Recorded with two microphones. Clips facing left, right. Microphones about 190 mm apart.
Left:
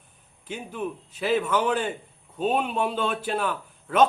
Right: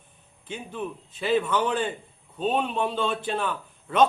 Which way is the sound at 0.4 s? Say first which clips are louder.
Left 2 dB; 10° left (ahead or behind).